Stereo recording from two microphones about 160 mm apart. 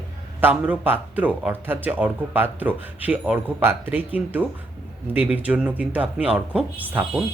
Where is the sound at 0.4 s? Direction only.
10° right (ahead or behind).